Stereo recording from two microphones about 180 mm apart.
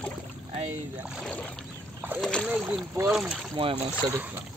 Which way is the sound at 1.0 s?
5° right (ahead or behind).